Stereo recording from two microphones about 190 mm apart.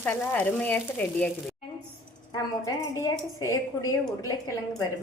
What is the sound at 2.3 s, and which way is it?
Speech, 20° left (ahead or behind).